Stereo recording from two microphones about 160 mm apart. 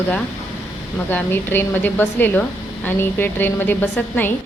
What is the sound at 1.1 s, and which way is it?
A woman's voice, 10° left (ahead or behind).